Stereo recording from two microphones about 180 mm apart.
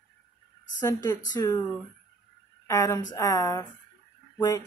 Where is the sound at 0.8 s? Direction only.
20° left (ahead or behind).